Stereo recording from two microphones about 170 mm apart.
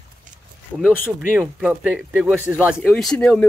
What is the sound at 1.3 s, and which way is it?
Speech, 10° right (ahead or behind).